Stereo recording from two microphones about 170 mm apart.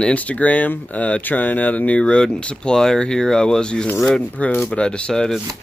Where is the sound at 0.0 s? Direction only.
10° left (ahead or behind).